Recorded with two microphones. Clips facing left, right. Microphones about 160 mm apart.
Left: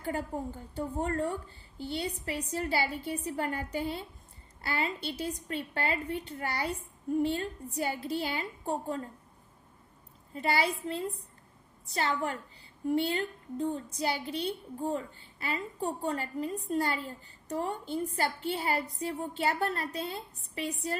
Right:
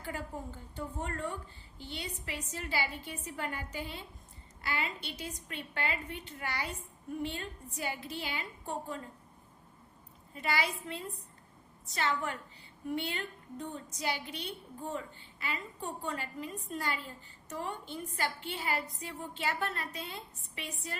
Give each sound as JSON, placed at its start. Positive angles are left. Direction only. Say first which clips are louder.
{"t": 0.8, "sound": "a woman's voice", "louder": "left 7 dB", "side_deg": 35}
{"t": 10.3, "sound": "a woman's voice", "louder": "left 4 dB", "side_deg": 35}